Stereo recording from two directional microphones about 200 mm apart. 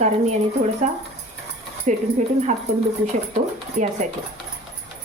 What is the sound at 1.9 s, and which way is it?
Speech, 35° right (ahead or behind).